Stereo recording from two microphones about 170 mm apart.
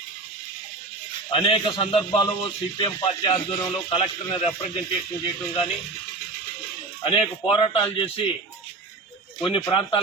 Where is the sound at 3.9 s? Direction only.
35° left (ahead or behind).